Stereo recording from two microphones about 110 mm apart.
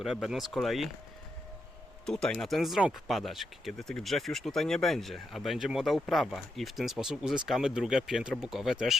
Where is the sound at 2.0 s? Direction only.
5° left (ahead or behind).